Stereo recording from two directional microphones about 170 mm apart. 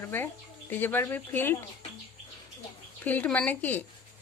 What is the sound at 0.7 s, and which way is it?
Speech, 10° left (ahead or behind).